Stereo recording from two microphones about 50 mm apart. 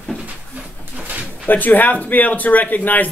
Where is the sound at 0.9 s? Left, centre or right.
Right.